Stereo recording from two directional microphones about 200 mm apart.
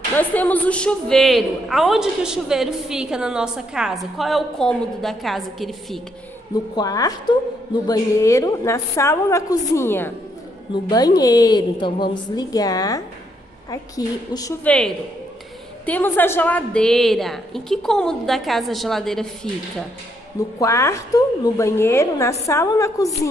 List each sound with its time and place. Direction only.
0.2 s a woman's voice: 10° left (ahead or behind)
6.8 s a woman's voice: 20° left (ahead or behind)
11.1 s a woman's voice: 20° left (ahead or behind); by 19.2 s centre (ahead or behind)
20.5 s a woman's voice: 15° left (ahead or behind)